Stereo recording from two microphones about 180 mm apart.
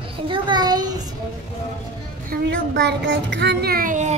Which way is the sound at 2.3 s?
70° right (ahead or behind).